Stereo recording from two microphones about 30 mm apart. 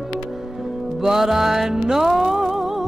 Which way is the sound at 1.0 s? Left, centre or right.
Centre.